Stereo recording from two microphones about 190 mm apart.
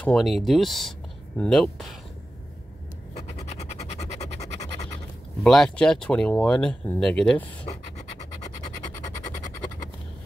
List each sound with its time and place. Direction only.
0.0 s speech: centre (ahead or behind)
3.3 s a sound: 35° left (ahead or behind)
5.4 s speech: 5° left (ahead or behind)